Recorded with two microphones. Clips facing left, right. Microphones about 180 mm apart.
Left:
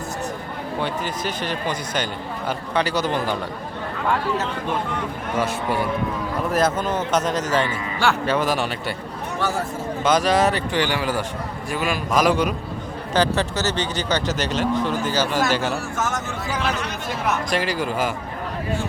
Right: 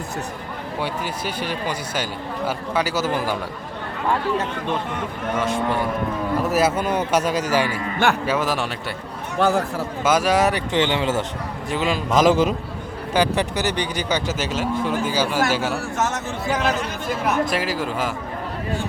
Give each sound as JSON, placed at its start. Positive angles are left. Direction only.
{"t": 0.8, "sound": "speech", "side_deg": -10}
{"t": 5.4, "sound": "speech", "side_deg": 5}
{"t": 6.5, "sound": "speech", "side_deg": -10}
{"t": 9.5, "sound": "speech", "side_deg": -65}
{"t": 10.0, "sound": "speech", "side_deg": -10}
{"t": 10.7, "sound": "a man's voice", "side_deg": -20}
{"t": 13.1, "sound": "speech", "side_deg": -15}
{"t": 17.4, "sound": "speech", "side_deg": -5}